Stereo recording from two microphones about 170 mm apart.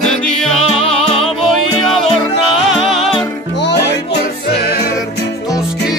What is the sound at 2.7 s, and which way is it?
Music, centre (ahead or behind).